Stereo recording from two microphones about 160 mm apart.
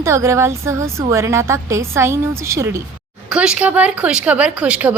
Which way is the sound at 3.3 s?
5° right (ahead or behind).